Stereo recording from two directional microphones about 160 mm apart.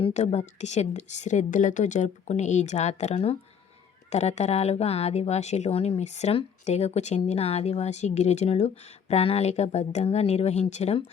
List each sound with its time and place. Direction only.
0.0 s speech: 45° left (ahead or behind)